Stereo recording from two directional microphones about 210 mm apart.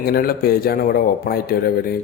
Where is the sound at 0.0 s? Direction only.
45° left (ahead or behind).